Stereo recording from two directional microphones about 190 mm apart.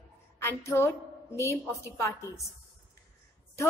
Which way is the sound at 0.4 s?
15° left (ahead or behind).